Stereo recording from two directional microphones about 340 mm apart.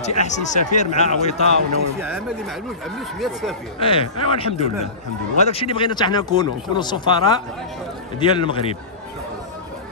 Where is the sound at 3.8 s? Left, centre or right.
Centre.